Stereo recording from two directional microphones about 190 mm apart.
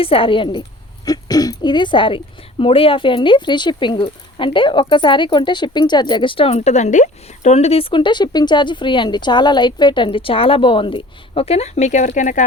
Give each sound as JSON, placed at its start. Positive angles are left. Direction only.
{"t": 0.0, "sound": "speech", "side_deg": 30}